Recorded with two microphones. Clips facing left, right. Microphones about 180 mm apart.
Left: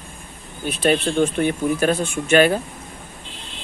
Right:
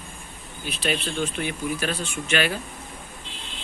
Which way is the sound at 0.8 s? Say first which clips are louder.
Left 9 dB; 55° left (ahead or behind).